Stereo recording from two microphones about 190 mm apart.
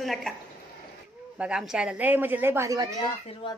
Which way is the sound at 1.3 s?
5° right (ahead or behind).